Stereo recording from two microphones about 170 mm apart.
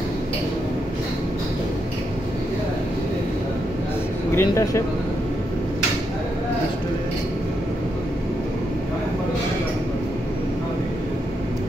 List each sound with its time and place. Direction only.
4.4 s speech: 15° left (ahead or behind)